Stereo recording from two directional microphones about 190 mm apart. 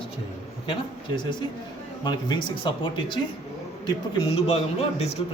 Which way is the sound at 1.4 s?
20° left (ahead or behind).